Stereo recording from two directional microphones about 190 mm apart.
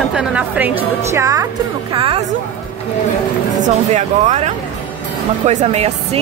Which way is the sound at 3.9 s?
35° right (ahead or behind).